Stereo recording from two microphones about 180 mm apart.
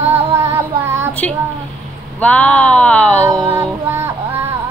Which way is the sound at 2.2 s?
5° left (ahead or behind).